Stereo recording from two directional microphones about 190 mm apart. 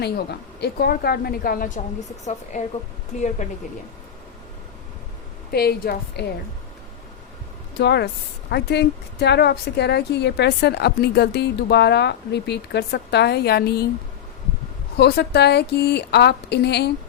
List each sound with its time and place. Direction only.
0.6 s a woman's voice: 55° left (ahead or behind)
5.5 s a woman's voice: 55° left (ahead or behind)
7.8 s a woman's voice: 60° left (ahead or behind)
14.9 s a woman's voice: 60° left (ahead or behind)